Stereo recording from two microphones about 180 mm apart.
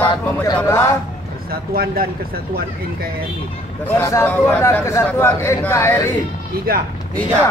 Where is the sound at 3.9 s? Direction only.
15° left (ahead or behind).